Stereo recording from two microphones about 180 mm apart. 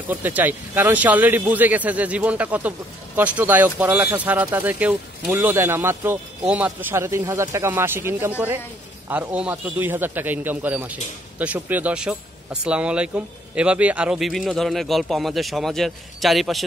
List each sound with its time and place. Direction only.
0.1 s speech: 10° right (ahead or behind)